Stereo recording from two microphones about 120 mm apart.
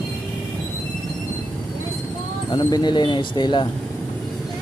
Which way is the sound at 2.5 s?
35° left (ahead or behind).